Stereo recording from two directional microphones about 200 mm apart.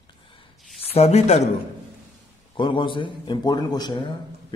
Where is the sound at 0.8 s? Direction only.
30° left (ahead or behind).